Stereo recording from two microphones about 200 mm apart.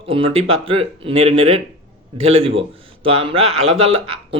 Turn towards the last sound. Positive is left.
turn(degrees=-30)  # may be behind; listen again after turning